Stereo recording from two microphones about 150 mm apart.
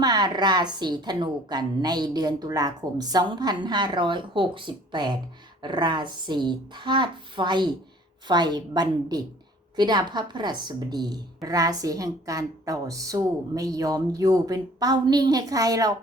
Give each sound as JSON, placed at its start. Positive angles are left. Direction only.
{"t": 0.0, "sound": "a woman's voice", "side_deg": -25}